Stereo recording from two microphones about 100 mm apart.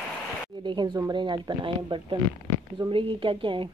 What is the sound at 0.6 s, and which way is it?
A woman's voice, 50° right (ahead or behind).